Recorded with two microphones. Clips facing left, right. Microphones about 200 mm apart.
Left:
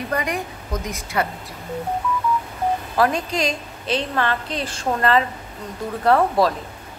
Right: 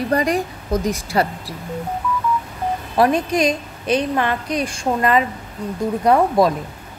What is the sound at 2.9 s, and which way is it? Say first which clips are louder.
A woman's voice: right 6 dB; 20° right (ahead or behind).